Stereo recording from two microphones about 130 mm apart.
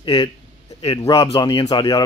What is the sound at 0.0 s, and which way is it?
Speech, 45° left (ahead or behind).